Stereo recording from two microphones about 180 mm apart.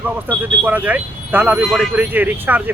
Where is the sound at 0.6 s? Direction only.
10° right (ahead or behind).